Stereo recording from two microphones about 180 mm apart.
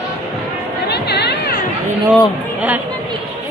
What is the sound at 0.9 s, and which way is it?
Chatter, 65° left (ahead or behind).